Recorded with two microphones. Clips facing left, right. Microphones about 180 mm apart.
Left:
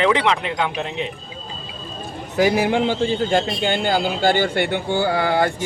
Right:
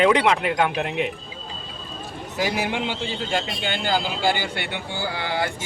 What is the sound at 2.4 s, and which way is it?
Speech, 50° left (ahead or behind).